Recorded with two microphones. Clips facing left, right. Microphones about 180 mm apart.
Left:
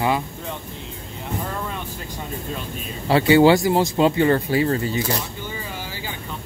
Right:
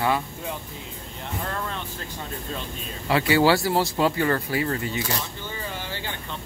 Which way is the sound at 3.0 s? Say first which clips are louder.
Left 6 dB; 30° left (ahead or behind).